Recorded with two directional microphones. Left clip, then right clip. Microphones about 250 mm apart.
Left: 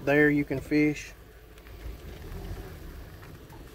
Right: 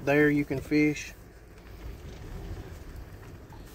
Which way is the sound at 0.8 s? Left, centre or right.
Left.